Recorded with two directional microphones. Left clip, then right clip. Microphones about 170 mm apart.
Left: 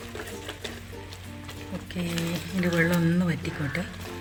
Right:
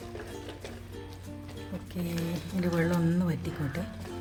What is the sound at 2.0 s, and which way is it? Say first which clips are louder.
Speech: left 5 dB; 10° right (ahead or behind).